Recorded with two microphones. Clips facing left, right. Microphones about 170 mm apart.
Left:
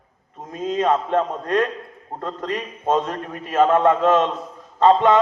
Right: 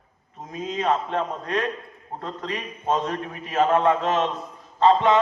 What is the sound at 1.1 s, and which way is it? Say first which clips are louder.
Speech: left 5 dB; 50° left (ahead or behind).